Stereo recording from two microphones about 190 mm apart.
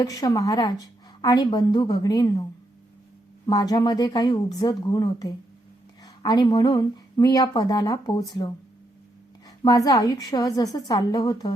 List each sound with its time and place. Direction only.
0.0 s speech: 20° left (ahead or behind)
9.6 s speech: 20° left (ahead or behind)